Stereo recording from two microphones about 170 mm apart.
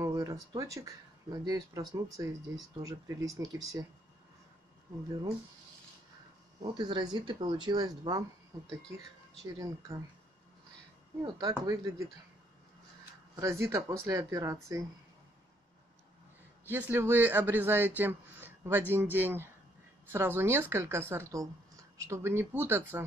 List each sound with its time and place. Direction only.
0.0 s speech: 20° right (ahead or behind)
6.6 s speech: 25° right (ahead or behind)
9.6 s speech: 20° right (ahead or behind)
11.2 s speech: 20° right (ahead or behind)
13.4 s speech: 15° right (ahead or behind)
16.6 s speech: 10° right (ahead or behind)